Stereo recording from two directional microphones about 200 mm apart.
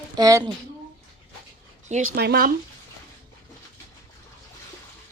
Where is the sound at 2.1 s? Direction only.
55° right (ahead or behind).